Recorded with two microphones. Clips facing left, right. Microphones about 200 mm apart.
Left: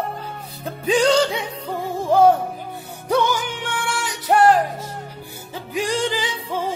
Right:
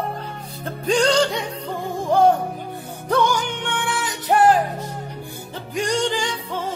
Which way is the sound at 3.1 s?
5° left (ahead or behind).